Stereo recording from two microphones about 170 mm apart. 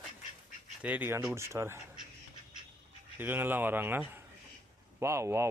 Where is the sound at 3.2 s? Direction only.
10° right (ahead or behind).